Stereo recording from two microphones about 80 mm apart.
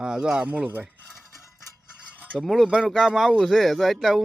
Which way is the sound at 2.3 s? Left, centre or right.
Centre.